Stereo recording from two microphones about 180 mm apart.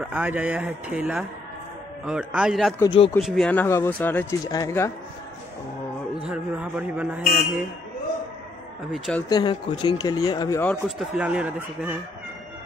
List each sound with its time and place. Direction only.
0.0 s a man's voice: 10° right (ahead or behind)
2.8 s speech: 20° left (ahead or behind)
3.2 s speech: centre (ahead or behind); by 4.9 s 15° left (ahead or behind)
6.2 s speech: 10° right (ahead or behind)
8.9 s a man's voice: centre (ahead or behind)
9.3 s speech: 25° left (ahead or behind)
10.6 s a man's voice: 5° left (ahead or behind)
11.1 s speech: 5° right (ahead or behind)